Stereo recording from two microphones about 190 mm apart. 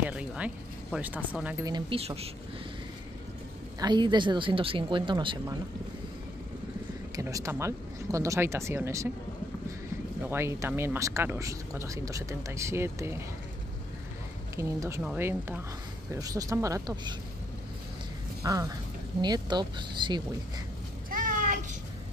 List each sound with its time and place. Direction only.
0.0 s a sound: 5° right (ahead or behind)
0.9 s speech: 10° right (ahead or behind)
1.7 s speech: 30° right (ahead or behind)
3.8 s speech: 25° right (ahead or behind)
7.2 s speech: 15° right (ahead or behind)
10.2 s speech: 15° right (ahead or behind)
14.5 s speech: 15° right (ahead or behind)
18.4 s speech: 15° right (ahead or behind)
21.1 s a sound: 45° right (ahead or behind)